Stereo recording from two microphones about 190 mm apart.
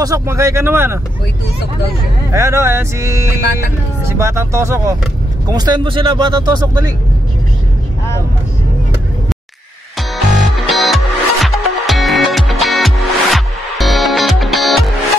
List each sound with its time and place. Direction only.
0.0 s speech: 15° right (ahead or behind)
2.3 s speech: 15° right (ahead or behind)
9.9 s music: centre (ahead or behind)